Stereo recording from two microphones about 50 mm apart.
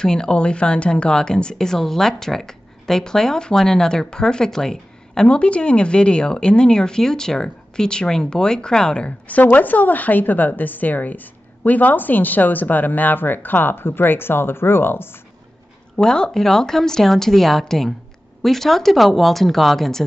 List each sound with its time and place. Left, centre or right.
0.0 s speech: centre; by 15.0 s left
16.0 s a woman's voice: centre